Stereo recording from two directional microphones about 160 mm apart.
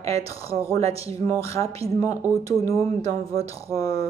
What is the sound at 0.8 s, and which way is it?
Speech, 40° right (ahead or behind).